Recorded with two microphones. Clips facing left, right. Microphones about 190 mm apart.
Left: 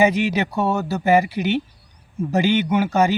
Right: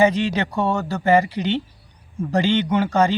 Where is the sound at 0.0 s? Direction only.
10° left (ahead or behind).